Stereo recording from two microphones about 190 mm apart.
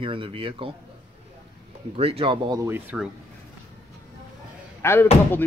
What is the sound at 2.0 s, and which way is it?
Speech, 30° right (ahead or behind).